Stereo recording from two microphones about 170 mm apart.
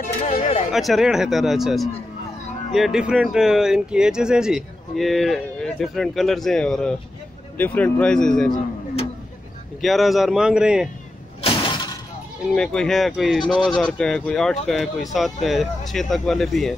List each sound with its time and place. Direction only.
0.0 s a sound: 45° left (ahead or behind)
0.7 s speech: centre (ahead or behind)
9.8 s speech: centre (ahead or behind)
11.4 s shatter: 30° left (ahead or behind)
12.4 s speech: 5° left (ahead or behind)
13.4 s speech: 25° left (ahead or behind)
13.7 s speech: 5° left (ahead or behind)